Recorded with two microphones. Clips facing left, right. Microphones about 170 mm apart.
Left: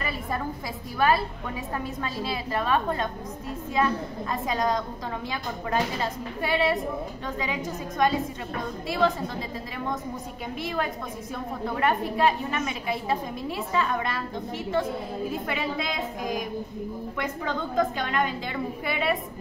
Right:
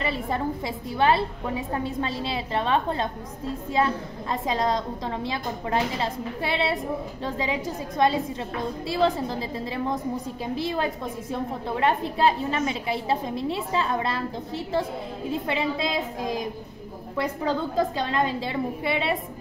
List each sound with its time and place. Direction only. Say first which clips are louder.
0.9 s a woman's voice: right 1 dB; 25° right (ahead or behind)
10.5 s a woman's voice: right 3 dB; 30° right (ahead or behind)
15.3 s a woman's voice: right 7 dB; 25° right (ahead or behind)